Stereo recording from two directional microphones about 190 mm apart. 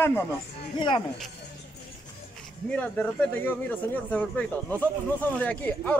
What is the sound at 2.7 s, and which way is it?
A man's voice, 10° left (ahead or behind).